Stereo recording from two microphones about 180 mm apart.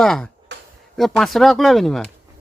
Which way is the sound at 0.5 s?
75° right (ahead or behind).